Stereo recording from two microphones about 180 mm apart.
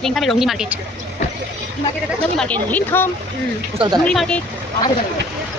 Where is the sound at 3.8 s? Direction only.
25° right (ahead or behind).